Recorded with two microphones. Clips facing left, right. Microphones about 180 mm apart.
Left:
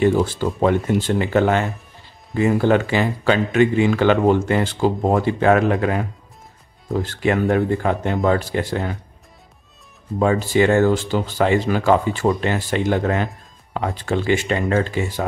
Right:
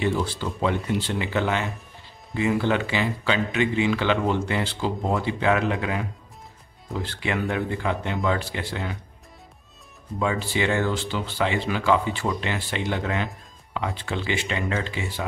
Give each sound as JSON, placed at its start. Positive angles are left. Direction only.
{"t": 0.0, "sound": "speech", "side_deg": 45}
{"t": 10.1, "sound": "speech", "side_deg": 45}